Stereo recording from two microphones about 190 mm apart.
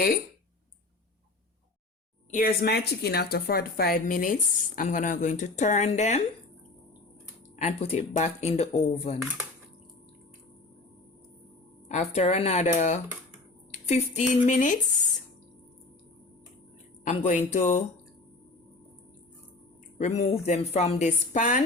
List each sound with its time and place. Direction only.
2.3 s a woman's voice: 50° left (ahead or behind); by 6.2 s 35° left (ahead or behind)
7.5 s speech: 35° left (ahead or behind)
11.9 s speech: 35° left (ahead or behind)
17.0 s speech: 40° left (ahead or behind)
20.0 s speech: 35° left (ahead or behind)